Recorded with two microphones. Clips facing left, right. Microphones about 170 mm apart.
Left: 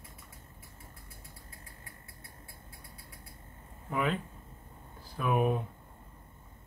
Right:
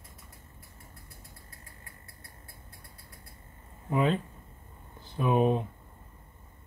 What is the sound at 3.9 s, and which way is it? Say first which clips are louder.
Speech: right 5 dB; 30° right (ahead or behind).